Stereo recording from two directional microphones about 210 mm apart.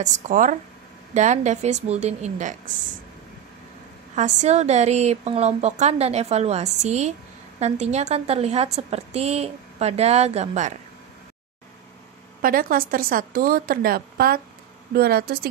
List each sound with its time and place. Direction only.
0.0 s a woman's voice: 40° right (ahead or behind)
4.1 s a woman's voice: 35° right (ahead or behind)
12.4 s speech: 40° right (ahead or behind)